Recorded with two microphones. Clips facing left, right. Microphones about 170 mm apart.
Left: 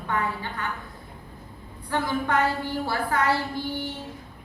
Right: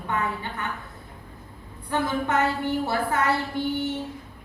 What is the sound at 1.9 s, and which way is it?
A woman's voice, 25° right (ahead or behind).